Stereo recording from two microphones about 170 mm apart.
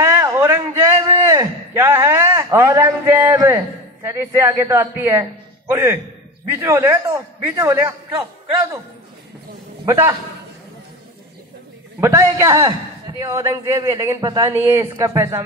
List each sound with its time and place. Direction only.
0.0 s a sound: 15° right (ahead or behind)
1.0 s a man's voice: 20° right (ahead or behind)
9.8 s a man's voice: 20° right (ahead or behind)
12.0 s a man's voice: 15° right (ahead or behind)